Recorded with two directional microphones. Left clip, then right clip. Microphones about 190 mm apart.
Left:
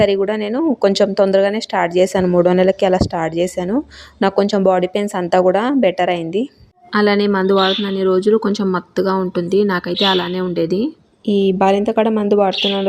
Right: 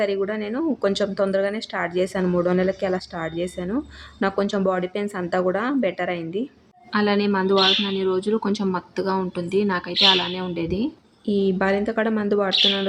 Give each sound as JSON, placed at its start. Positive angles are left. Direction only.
{"t": 0.0, "sound": "speech", "side_deg": 35}